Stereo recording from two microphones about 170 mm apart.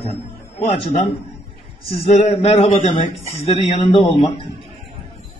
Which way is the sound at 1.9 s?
35° left (ahead or behind).